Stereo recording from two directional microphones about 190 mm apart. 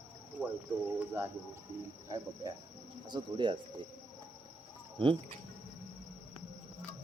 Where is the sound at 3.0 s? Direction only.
25° right (ahead or behind).